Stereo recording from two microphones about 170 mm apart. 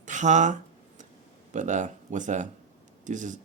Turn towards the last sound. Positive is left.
turn(degrees=-50)  # may be behind; listen again after turning